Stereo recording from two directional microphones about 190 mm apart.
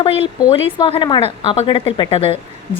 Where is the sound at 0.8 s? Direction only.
25° left (ahead or behind).